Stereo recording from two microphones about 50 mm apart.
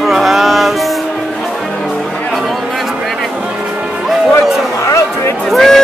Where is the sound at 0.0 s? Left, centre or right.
Centre.